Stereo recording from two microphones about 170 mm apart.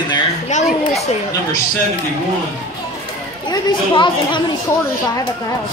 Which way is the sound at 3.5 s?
25° left (ahead or behind).